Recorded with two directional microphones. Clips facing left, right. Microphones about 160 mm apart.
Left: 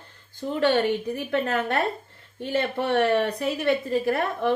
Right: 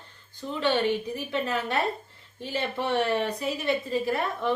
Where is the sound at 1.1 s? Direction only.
55° left (ahead or behind).